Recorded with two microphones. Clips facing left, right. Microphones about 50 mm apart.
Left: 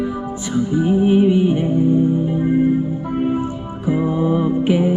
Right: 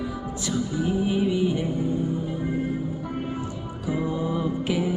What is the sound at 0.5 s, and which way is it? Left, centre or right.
Music, left.